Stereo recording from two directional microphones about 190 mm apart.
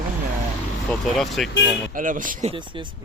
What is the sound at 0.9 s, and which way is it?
Speech, centre (ahead or behind).